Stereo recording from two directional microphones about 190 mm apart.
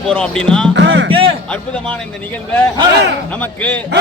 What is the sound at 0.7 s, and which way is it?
Speech, 75° right (ahead or behind).